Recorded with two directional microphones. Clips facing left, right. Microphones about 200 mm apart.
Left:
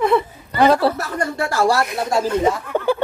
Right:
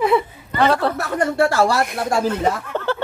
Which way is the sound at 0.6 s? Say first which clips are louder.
Left 3 dB; 10° left (ahead or behind).